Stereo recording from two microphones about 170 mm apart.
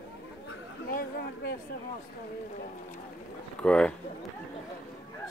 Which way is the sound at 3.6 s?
5° left (ahead or behind).